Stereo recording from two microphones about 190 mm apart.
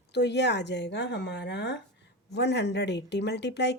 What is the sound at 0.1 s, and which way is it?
Speech, 65° left (ahead or behind).